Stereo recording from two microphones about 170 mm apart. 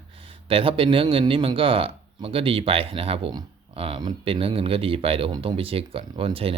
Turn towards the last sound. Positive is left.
turn(degrees=-35)  # may be behind; listen again after turning